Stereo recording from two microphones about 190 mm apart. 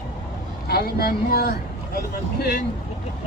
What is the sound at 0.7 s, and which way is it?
Speech, 55° left (ahead or behind).